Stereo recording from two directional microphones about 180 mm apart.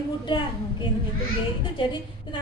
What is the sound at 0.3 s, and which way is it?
A woman's voice, 25° left (ahead or behind).